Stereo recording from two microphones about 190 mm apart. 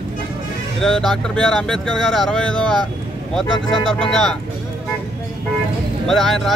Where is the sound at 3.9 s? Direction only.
Centre (ahead or behind).